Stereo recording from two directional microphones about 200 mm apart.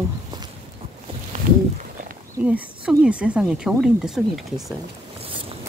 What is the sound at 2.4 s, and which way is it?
Speech, 5° right (ahead or behind).